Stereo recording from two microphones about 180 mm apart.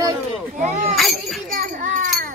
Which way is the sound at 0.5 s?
40° right (ahead or behind).